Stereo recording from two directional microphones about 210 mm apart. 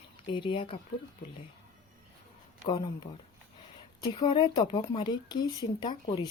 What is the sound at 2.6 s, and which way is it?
Speech, 20° left (ahead or behind).